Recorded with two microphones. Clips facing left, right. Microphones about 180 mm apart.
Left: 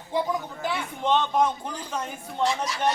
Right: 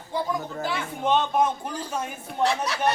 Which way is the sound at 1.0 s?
10° right (ahead or behind).